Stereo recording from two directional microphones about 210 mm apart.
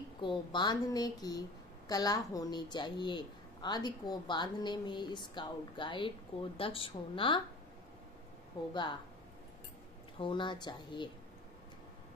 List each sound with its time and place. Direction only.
0.2 s a woman's voice: 20° left (ahead or behind)
10.1 s a woman's voice: 25° left (ahead or behind)